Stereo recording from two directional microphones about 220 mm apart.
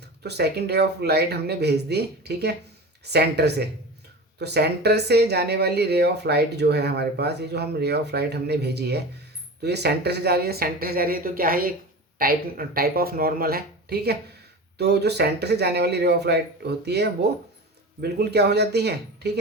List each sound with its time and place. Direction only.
0.2 s speech: 50° right (ahead or behind)